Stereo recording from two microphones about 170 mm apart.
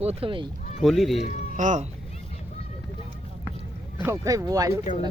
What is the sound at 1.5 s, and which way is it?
Speech, 45° right (ahead or behind).